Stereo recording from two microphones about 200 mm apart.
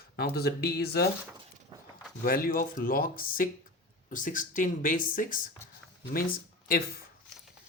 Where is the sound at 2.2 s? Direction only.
45° left (ahead or behind).